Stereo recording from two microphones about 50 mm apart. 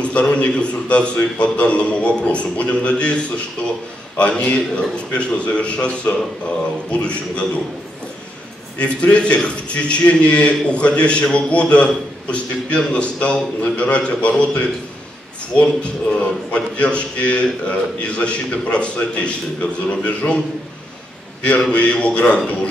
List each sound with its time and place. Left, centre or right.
0.0 s a man's voice: left
8.7 s a man's voice: left
15.8 s a man's voice: left
21.5 s a man's voice: left